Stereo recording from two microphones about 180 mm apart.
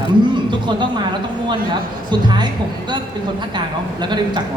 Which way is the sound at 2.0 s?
25° right (ahead or behind).